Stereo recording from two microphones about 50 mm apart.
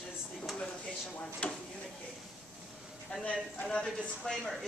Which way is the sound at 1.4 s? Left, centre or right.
Left.